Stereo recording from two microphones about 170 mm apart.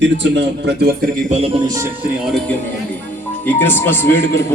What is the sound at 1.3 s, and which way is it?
Speech, 35° right (ahead or behind).